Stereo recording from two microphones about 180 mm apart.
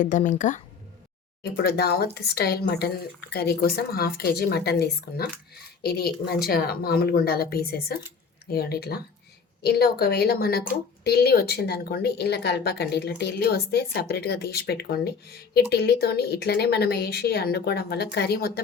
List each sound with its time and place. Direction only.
0.0 s speech: 45° left (ahead or behind)
1.6 s speech: 60° left (ahead or behind)